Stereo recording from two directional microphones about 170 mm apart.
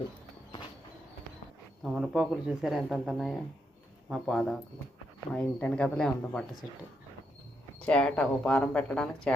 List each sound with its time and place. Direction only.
1.8 s speech: centre (ahead or behind)
7.8 s speech: 5° left (ahead or behind)